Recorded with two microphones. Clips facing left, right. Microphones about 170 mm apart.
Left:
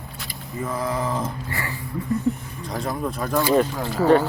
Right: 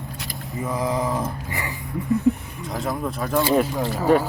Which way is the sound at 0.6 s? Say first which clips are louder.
Right 2 dB; 15° right (ahead or behind).